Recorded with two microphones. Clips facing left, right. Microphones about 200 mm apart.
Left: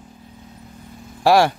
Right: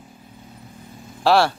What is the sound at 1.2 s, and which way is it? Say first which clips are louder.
Speech: left 2 dB; 15° left (ahead or behind).